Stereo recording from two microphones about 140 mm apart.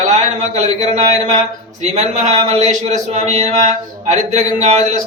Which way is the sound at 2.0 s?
55° right (ahead or behind).